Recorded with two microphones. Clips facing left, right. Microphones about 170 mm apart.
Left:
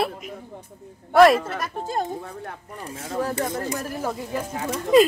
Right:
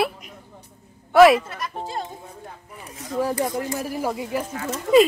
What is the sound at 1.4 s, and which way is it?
Speech, 50° left (ahead or behind).